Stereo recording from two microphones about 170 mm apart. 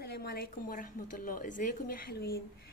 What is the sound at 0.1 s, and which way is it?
A woman's voice, 65° left (ahead or behind).